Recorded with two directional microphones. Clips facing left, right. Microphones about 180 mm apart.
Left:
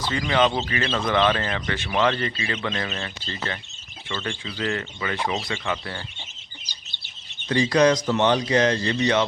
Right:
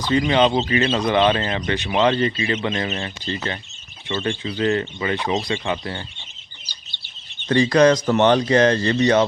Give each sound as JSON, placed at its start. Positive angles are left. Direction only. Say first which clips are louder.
{"t": 0.0, "sound": "speech", "louder": "right 4 dB", "side_deg": -20}
{"t": 7.4, "sound": "speech", "louder": "right 4 dB", "side_deg": -55}